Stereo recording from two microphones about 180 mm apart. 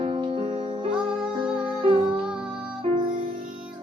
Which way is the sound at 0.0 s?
30° right (ahead or behind).